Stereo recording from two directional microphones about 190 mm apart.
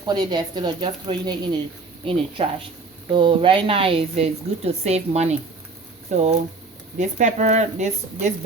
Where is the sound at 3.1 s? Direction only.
25° right (ahead or behind).